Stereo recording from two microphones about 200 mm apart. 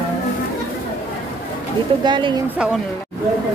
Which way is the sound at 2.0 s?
25° right (ahead or behind).